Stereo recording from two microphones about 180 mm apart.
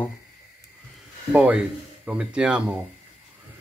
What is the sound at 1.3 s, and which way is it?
Speech, 5° right (ahead or behind).